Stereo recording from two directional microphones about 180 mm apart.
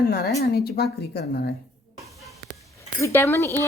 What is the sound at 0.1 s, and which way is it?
A woman's voice, 60° left (ahead or behind).